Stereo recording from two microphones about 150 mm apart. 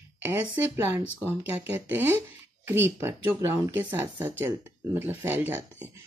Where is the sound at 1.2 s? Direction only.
15° right (ahead or behind).